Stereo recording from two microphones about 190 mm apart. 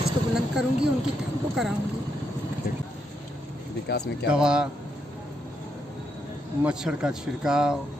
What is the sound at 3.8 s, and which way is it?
Speech, 60° left (ahead or behind).